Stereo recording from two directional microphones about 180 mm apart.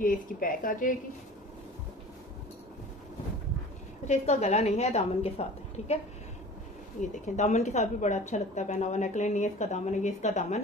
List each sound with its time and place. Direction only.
0.0 s a woman's voice: 50° left (ahead or behind)
4.0 s a woman's voice: 40° left (ahead or behind)
7.0 s a woman's voice: 40° left (ahead or behind)